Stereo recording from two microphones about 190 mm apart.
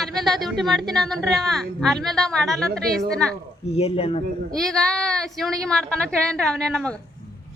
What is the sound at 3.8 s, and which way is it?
Speech, 30° left (ahead or behind).